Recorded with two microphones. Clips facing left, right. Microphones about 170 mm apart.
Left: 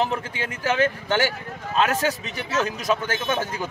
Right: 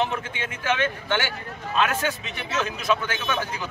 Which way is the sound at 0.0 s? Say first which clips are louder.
Left 2 dB; 35° left (ahead or behind).